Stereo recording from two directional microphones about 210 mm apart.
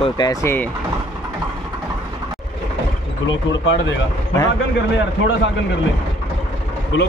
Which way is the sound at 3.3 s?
60° left (ahead or behind).